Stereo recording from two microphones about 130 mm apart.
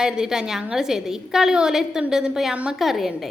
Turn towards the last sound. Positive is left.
turn(degrees=0)  # may be behind; listen again after turning